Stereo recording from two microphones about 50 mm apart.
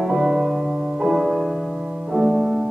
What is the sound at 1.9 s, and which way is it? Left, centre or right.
Music, centre.